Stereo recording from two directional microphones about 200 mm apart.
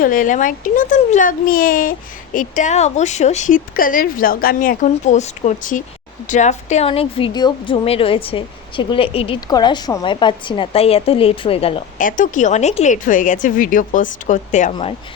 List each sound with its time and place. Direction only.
0.0 s a woman's voice: 40° left (ahead or behind)
11.9 s speech: 40° left (ahead or behind)